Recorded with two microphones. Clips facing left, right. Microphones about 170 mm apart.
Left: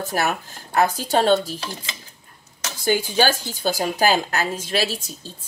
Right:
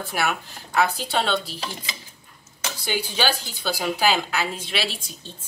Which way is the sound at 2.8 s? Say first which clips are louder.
Left 6 dB; 45° left (ahead or behind).